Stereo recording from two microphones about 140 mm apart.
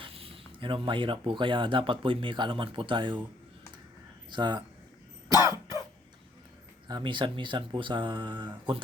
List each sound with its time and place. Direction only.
0.0 s zipper: 40° right (ahead or behind)
0.9 s speech: 35° right (ahead or behind)
4.3 s speech: 30° right (ahead or behind)
5.3 s cough: 30° left (ahead or behind)
6.8 s speech: 35° right (ahead or behind)